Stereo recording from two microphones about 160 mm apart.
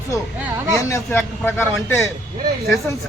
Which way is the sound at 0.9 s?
15° left (ahead or behind).